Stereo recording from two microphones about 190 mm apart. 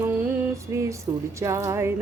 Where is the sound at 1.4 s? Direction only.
15° right (ahead or behind).